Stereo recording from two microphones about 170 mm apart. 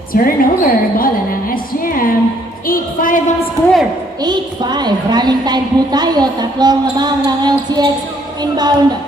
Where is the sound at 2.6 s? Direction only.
55° left (ahead or behind).